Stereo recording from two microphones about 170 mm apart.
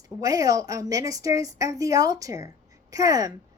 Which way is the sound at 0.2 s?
20° right (ahead or behind).